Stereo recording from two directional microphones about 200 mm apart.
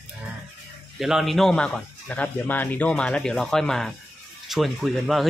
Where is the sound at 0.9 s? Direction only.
Centre (ahead or behind).